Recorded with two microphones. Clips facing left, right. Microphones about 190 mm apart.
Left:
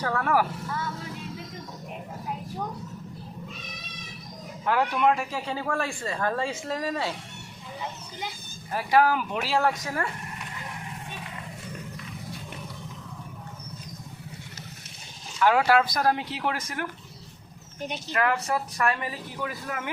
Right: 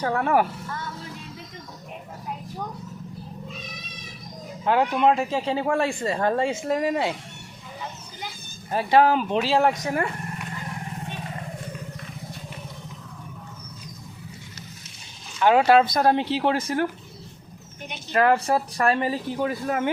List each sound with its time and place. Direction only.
0.1 s a man's voice: 25° right (ahead or behind)
4.6 s a man's voice: 20° right (ahead or behind)
8.7 s a man's voice: 25° right (ahead or behind)
15.4 s a man's voice: 25° right (ahead or behind)
18.1 s speech: 30° right (ahead or behind)